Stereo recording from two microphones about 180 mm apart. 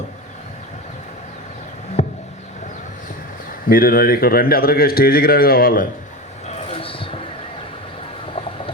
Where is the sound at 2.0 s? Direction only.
40° left (ahead or behind).